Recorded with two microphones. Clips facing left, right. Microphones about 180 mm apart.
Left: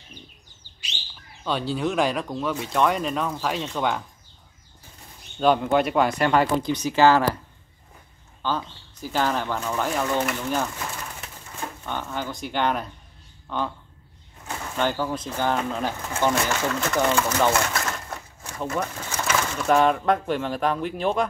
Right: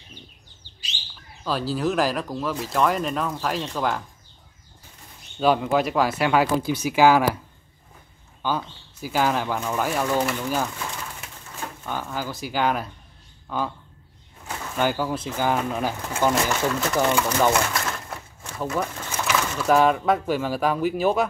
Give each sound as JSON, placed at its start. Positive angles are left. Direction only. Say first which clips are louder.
{"t": 1.4, "sound": "speech", "louder": "right 1 dB", "side_deg": 0}
{"t": 5.4, "sound": "speech", "louder": "left 1 dB", "side_deg": -5}
{"t": 8.4, "sound": "speech", "louder": "right 1 dB", "side_deg": -10}
{"t": 14.8, "sound": "speech", "louder": "right 1 dB", "side_deg": -10}